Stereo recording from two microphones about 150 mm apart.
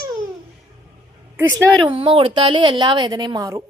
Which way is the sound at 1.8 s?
35° right (ahead or behind).